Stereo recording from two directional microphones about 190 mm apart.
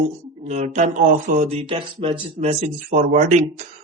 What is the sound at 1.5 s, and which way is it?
Speech, 30° right (ahead or behind).